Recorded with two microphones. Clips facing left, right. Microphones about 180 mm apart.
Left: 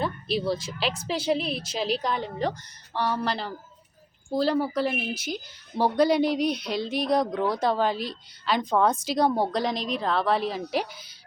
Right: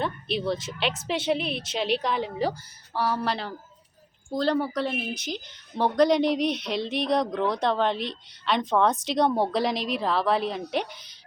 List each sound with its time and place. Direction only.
0.0 s a woman's voice: centre (ahead or behind)